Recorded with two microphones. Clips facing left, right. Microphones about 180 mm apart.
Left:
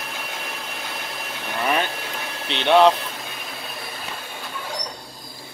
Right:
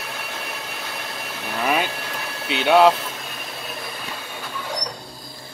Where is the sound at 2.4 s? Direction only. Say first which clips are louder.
Even; 5° right (ahead or behind).